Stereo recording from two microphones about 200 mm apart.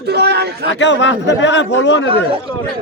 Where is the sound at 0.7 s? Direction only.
65° left (ahead or behind).